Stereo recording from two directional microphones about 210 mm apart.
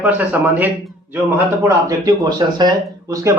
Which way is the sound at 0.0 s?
10° right (ahead or behind).